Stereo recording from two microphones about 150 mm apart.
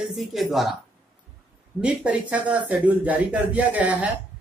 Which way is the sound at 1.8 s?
10° right (ahead or behind).